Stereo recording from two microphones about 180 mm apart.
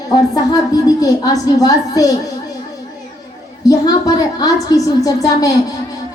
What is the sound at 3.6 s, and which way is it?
A woman's voice, 20° left (ahead or behind).